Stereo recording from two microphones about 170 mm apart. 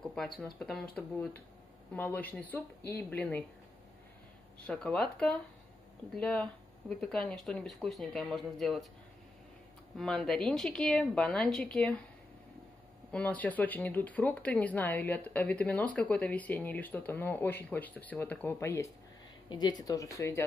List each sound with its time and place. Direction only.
0.0 s speech: centre (ahead or behind)
4.6 s speech: 5° left (ahead or behind)
9.9 s speech: centre (ahead or behind)
13.1 s speech: 10° left (ahead or behind)